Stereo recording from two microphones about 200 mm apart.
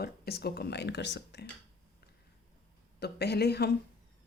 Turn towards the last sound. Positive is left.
turn(degrees=55)  # may be behind; listen again after turning